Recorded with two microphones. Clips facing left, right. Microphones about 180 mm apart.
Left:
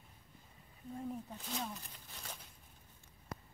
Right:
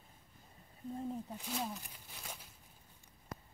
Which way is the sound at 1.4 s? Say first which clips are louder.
Right 3 dB; 5° right (ahead or behind).